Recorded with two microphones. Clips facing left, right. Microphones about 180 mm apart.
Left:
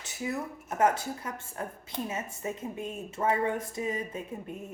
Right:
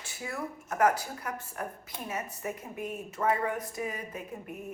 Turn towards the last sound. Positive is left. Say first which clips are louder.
# left 2 dB
turn(degrees=25)  # may be behind; listen again after turning